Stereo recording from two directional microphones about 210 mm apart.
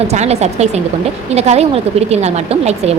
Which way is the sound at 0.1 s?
30° right (ahead or behind).